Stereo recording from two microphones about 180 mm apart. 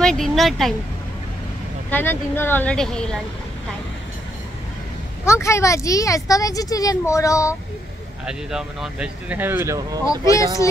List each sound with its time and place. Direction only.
0.0 s speech: centre (ahead or behind)
1.9 s a woman's voice: 10° left (ahead or behind)
5.2 s a woman's voice: 15° left (ahead or behind)
8.3 s speech: 5° right (ahead or behind)
10.0 s a woman's voice: 20° left (ahead or behind)